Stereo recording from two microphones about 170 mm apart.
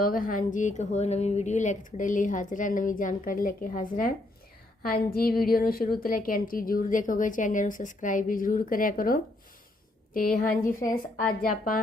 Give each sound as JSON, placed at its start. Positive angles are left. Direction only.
{"t": 0.0, "sound": "a woman's voice", "side_deg": 55}
{"t": 10.8, "sound": "a woman's voice", "side_deg": 15}